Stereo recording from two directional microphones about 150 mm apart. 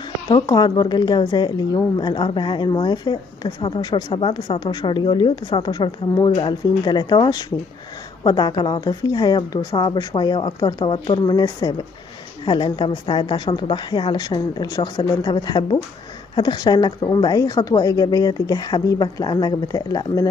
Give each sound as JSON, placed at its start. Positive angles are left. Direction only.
{"t": 0.3, "sound": "a woman's voice", "side_deg": 30}